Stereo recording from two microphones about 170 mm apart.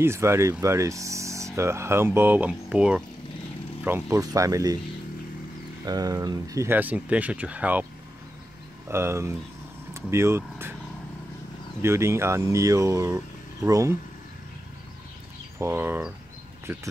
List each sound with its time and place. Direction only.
0.0 s speech: 15° right (ahead or behind)
5.9 s speech: 20° right (ahead or behind)
8.8 s speech: 15° right (ahead or behind)
11.8 s speech: 15° right (ahead or behind)
15.6 s speech: 15° right (ahead or behind)